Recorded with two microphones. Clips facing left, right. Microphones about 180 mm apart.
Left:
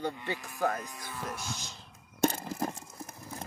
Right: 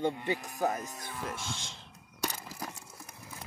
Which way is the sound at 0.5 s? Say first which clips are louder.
Even; 20° right (ahead or behind).